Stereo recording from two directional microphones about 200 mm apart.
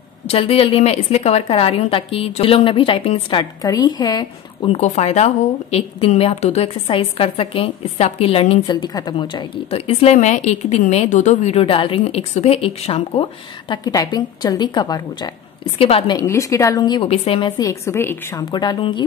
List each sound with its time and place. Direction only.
0.3 s a woman's voice: 30° left (ahead or behind)
4.7 s a woman's voice: 35° left (ahead or behind)
16.2 s a woman's voice: 15° left (ahead or behind)
18.5 s a woman's voice: 20° left (ahead or behind)